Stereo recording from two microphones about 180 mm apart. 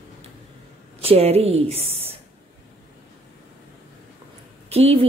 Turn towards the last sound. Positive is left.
turn(degrees=-35)  # may be behind; listen again after turning